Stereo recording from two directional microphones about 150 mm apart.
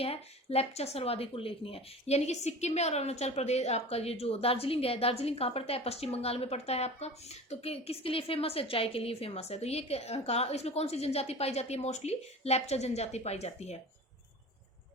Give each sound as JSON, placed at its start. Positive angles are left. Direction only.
{"t": 0.0, "sound": "speech", "side_deg": 40}